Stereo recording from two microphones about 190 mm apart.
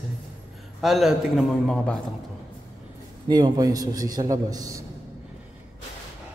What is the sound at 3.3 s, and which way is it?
A man's voice, 20° right (ahead or behind).